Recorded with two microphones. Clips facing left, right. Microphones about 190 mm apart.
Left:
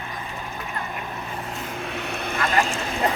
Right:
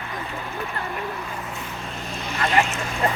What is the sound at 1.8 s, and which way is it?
Vehicle, 65° left (ahead or behind).